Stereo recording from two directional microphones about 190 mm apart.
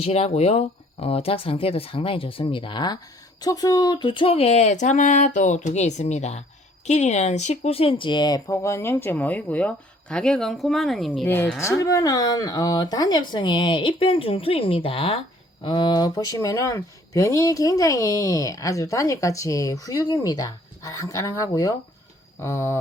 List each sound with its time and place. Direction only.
0.0 s speech: 35° left (ahead or behind); by 22.8 s 15° left (ahead or behind)